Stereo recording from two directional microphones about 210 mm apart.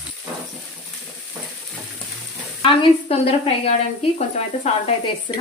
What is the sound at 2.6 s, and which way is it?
Speech, 30° left (ahead or behind).